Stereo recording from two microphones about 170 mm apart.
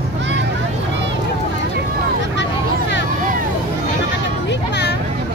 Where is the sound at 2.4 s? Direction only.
90° left.